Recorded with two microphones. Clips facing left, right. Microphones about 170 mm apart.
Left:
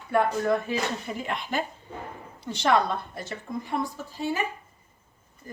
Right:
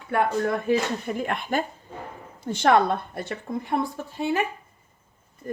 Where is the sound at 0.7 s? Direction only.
50° right (ahead or behind).